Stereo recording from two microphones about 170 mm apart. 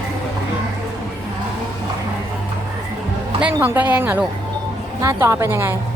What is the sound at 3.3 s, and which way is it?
A woman's voice, 10° right (ahead or behind).